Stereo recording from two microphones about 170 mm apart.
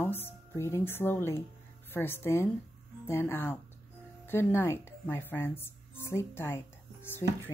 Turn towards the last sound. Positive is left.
turn(degrees=15)  # may be behind; listen again after turning